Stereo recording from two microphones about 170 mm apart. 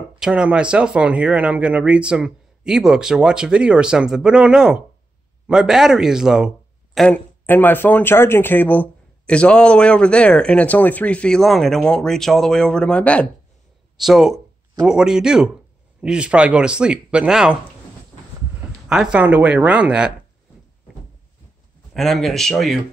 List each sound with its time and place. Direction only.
0.2 s speech: 5° right (ahead or behind)
7.4 s speech: 10° left (ahead or behind); by 17.6 s 5° right (ahead or behind)
18.9 s speech: 5° right (ahead or behind)
21.9 s speech: centre (ahead or behind)